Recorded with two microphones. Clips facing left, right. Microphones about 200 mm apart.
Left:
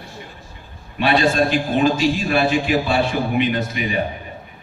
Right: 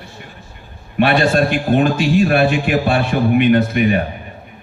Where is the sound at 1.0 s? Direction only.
55° right (ahead or behind).